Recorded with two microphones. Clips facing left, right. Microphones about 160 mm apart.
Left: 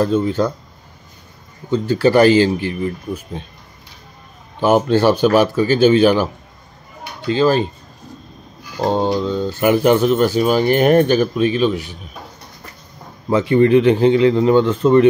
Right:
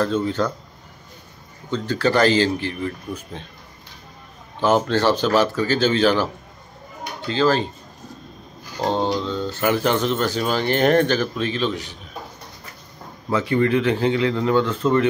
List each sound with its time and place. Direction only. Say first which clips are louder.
0.0 s speech: left 4 dB; 15° left (ahead or behind)
1.7 s speech: left 6 dB; 10° left (ahead or behind)
4.6 s speech: left 5 dB; 15° left (ahead or behind)
8.8 s speech: left 4 dB; 10° left (ahead or behind)
13.3 s a man's voice: left 7 dB; 20° left (ahead or behind)